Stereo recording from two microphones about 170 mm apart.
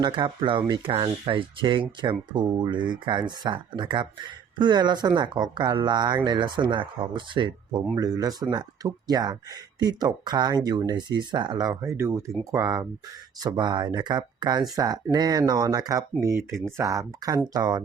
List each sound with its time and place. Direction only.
0.0 s speech: 30° right (ahead or behind)
16.5 s speech: centre (ahead or behind)
16.7 s speech: 20° right (ahead or behind)